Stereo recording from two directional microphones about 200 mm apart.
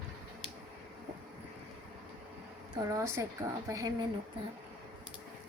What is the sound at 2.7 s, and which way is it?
A woman's voice, 15° right (ahead or behind).